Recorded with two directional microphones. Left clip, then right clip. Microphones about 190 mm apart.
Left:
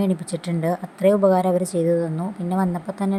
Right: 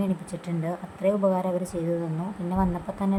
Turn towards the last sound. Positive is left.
turn(degrees=25)  # may be behind; listen again after turning